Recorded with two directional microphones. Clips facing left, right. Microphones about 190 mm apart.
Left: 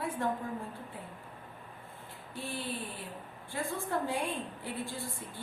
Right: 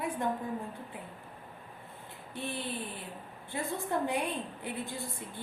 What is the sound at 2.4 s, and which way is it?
A woman's voice, 20° right (ahead or behind).